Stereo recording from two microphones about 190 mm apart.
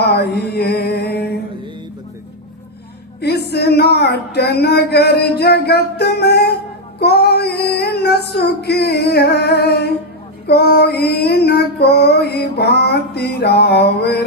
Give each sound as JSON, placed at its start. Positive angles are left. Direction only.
{"t": 0.0, "sound": "mantra", "side_deg": 60}
{"t": 3.2, "sound": "speech", "side_deg": 60}
{"t": 7.0, "sound": "child singing", "side_deg": 60}